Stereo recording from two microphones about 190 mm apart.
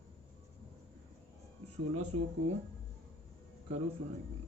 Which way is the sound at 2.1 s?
35° right (ahead or behind).